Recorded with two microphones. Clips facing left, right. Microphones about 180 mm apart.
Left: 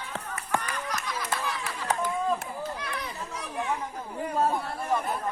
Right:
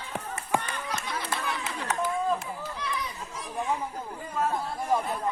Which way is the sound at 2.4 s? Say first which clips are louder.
Left 1 dB; 50° left (ahead or behind).